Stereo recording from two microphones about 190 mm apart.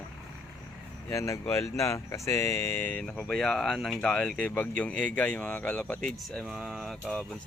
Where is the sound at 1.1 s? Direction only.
15° left (ahead or behind).